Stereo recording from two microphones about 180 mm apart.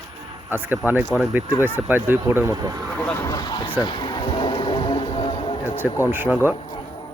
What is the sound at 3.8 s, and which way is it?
Music, 25° left (ahead or behind).